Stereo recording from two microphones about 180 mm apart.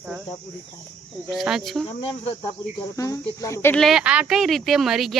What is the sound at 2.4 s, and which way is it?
Speech, 20° left (ahead or behind).